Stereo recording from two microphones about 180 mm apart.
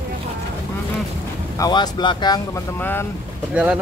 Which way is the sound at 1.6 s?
20° left (ahead or behind).